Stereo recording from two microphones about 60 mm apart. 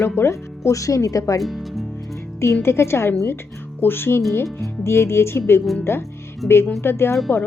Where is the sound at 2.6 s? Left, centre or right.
Left.